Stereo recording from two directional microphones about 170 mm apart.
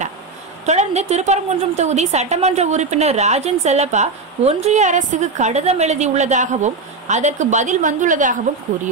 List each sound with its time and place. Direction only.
0.7 s a woman's voice: 40° right (ahead or behind)